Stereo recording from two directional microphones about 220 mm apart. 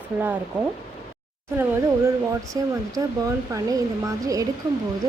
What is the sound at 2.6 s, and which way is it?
Speech, 15° right (ahead or behind).